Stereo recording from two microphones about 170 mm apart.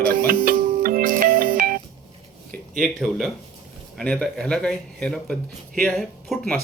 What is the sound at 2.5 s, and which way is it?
A man's voice, 5° left (ahead or behind).